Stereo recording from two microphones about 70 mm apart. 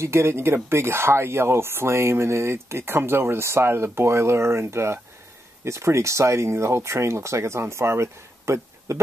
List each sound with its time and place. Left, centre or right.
0.0 s speech: right